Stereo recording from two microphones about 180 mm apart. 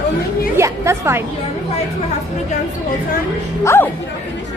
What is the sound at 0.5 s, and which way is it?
Speech, 15° right (ahead or behind).